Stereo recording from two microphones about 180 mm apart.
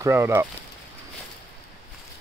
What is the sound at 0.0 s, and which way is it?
Speech, 15° right (ahead or behind).